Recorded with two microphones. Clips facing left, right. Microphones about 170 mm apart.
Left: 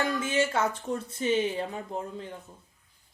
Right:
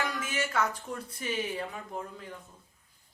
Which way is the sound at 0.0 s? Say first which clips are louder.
Left 6 dB; 25° left (ahead or behind).